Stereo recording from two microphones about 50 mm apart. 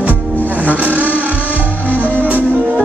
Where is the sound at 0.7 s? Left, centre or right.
Right.